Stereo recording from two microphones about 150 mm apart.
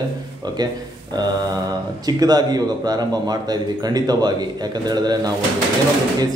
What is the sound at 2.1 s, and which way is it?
Speech, 25° right (ahead or behind).